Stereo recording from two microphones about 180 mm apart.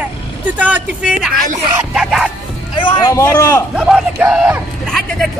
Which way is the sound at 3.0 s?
15° left (ahead or behind).